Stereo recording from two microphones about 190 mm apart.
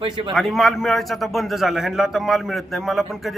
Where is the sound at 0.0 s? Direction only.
25° right (ahead or behind).